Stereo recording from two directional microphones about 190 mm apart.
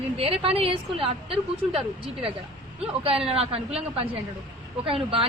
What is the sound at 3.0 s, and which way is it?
A woman's voice, 30° right (ahead or behind).